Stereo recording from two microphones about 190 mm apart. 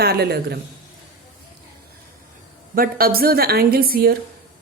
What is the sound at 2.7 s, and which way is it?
A woman's voice, 50° right (ahead or behind).